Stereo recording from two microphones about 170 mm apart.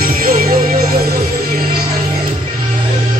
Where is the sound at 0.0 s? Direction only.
55° right (ahead or behind).